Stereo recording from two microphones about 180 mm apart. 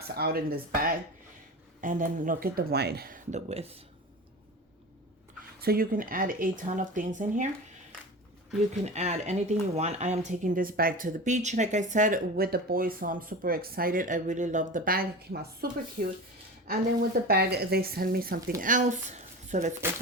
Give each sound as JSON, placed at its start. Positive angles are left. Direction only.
{"t": 0.1, "sound": "speech", "side_deg": -60}
{"t": 3.3, "sound": "speech", "side_deg": -35}
{"t": 5.5, "sound": "speech", "side_deg": -55}
{"t": 8.7, "sound": "speech", "side_deg": -40}
{"t": 17.2, "sound": "speech", "side_deg": -60}
{"t": 18.6, "sound": "speech", "side_deg": -45}